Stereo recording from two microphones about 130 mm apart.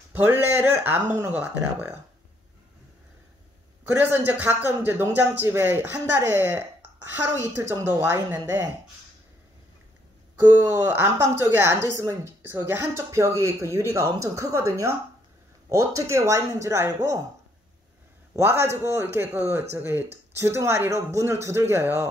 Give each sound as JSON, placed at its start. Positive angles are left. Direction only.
{"t": 0.1, "sound": "speech", "side_deg": -15}
{"t": 4.0, "sound": "a woman's voice", "side_deg": -15}
{"t": 10.4, "sound": "a woman's voice", "side_deg": -15}
{"t": 18.3, "sound": "a woman's voice", "side_deg": -20}